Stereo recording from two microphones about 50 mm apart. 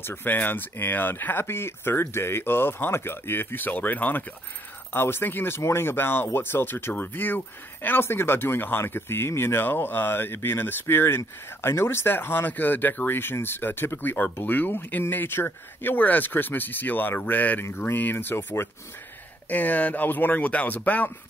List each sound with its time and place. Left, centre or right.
0.0 s speech: left
4.9 s speech: left
5.6 s speech: left
8.0 s speech: left
17.6 s speech: left
17.9 s speech: left
19.5 s speech: left